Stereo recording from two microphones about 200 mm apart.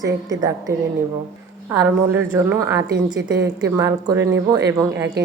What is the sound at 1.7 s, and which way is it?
A woman's voice, 10° right (ahead or behind).